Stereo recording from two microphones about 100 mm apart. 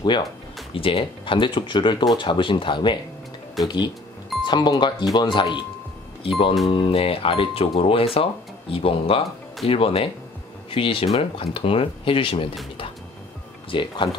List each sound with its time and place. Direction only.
0.0 s speech: 50° left (ahead or behind)
0.7 s speech: 65° left (ahead or behind)
6.2 s speech: 65° left (ahead or behind)
13.7 s speech: 55° left (ahead or behind)